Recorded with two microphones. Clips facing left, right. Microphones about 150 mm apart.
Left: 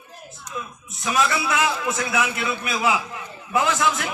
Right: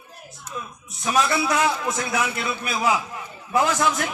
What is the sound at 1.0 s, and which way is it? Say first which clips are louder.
A man's voice: right 1 dB; 40° right (ahead or behind).